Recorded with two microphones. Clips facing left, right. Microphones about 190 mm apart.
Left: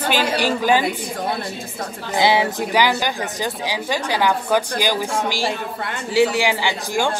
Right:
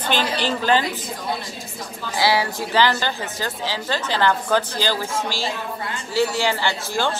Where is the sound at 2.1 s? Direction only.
20° left (ahead or behind).